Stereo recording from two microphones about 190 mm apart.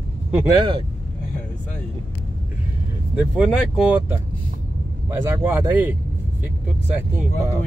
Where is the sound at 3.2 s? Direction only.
5° right (ahead or behind).